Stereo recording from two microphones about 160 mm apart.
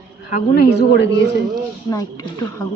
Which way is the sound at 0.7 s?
90° left.